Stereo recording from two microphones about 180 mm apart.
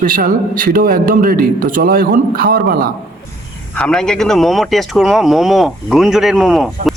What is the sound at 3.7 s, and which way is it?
A man's voice, 5° left (ahead or behind).